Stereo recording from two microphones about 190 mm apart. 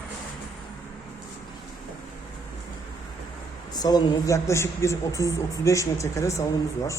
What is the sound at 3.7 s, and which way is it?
Speech, 20° left (ahead or behind).